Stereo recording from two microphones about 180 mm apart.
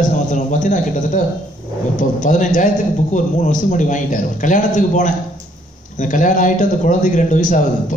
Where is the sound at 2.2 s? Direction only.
45° left (ahead or behind).